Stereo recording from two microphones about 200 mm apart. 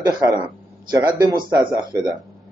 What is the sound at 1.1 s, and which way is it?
Speech, 15° right (ahead or behind).